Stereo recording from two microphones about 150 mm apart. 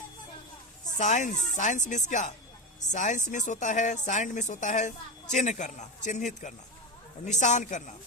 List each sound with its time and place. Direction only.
0.9 s speech: 55° left (ahead or behind)